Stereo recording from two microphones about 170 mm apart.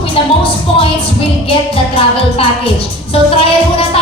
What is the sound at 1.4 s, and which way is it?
Music, 35° left (ahead or behind).